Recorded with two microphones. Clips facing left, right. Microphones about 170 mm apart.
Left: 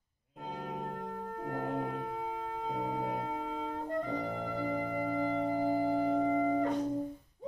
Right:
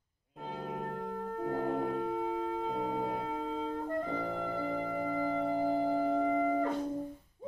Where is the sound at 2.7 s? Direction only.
15° left (ahead or behind).